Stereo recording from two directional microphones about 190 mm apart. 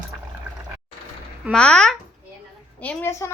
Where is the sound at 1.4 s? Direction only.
5° left (ahead or behind).